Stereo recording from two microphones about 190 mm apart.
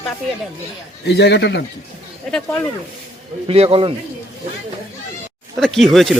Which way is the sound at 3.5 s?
30° right (ahead or behind).